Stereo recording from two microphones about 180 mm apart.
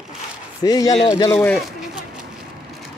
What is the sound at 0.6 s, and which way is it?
Speech, 20° left (ahead or behind).